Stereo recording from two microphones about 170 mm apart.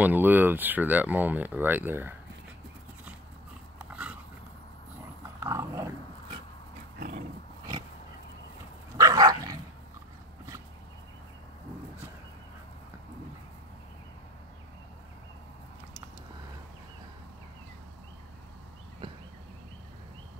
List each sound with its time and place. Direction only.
0.0 s speech: 10° right (ahead or behind)
3.7 s dog: 5° right (ahead or behind)
5.4 s dog: 20° right (ahead or behind)
7.0 s a sound: 55° right (ahead or behind)
8.9 s dog: 20° right (ahead or behind)